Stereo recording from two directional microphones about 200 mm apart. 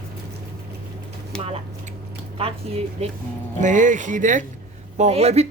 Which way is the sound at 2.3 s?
30° right (ahead or behind).